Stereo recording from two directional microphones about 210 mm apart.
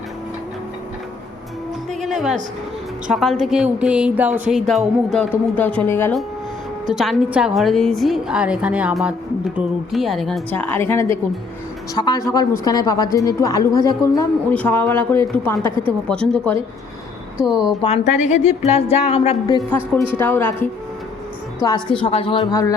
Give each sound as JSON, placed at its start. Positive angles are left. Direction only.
{"t": 1.9, "sound": "music", "side_deg": 0}
{"t": 3.1, "sound": "a woman's voice", "side_deg": 0}
{"t": 15.7, "sound": "a woman's voice", "side_deg": -25}
{"t": 16.0, "sound": "speech", "side_deg": 5}
{"t": 17.8, "sound": "a woman's voice", "side_deg": 30}
{"t": 22.0, "sound": "a woman's voice", "side_deg": 25}